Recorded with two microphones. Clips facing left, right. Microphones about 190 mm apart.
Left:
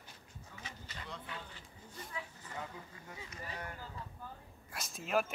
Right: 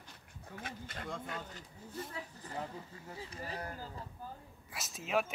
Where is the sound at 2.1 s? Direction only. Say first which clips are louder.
Right 2 dB; 35° right (ahead or behind).